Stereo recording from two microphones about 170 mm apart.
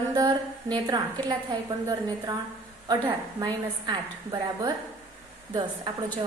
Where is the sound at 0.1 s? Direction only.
25° right (ahead or behind).